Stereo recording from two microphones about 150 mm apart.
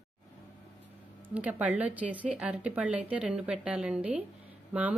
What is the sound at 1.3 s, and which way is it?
A woman's voice, 10° right (ahead or behind).